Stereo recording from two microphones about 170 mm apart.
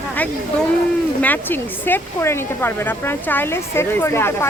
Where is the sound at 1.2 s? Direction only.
10° left (ahead or behind).